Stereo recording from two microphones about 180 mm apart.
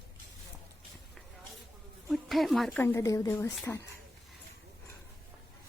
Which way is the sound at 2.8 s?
15° left (ahead or behind).